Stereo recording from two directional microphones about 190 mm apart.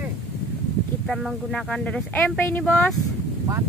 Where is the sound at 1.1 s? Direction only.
Centre (ahead or behind).